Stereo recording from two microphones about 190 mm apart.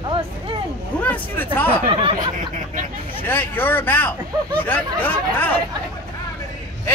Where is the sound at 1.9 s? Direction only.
30° right (ahead or behind).